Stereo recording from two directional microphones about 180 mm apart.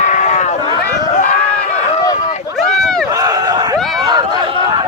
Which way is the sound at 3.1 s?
20° right (ahead or behind).